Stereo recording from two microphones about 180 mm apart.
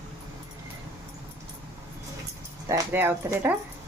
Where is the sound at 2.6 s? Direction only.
15° right (ahead or behind).